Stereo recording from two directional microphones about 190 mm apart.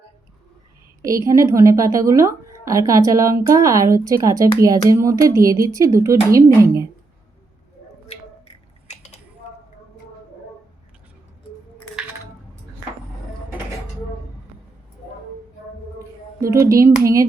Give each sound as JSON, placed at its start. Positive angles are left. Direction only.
{"t": 1.0, "sound": "a woman's voice", "side_deg": -15}
{"t": 16.5, "sound": "a woman's voice", "side_deg": -15}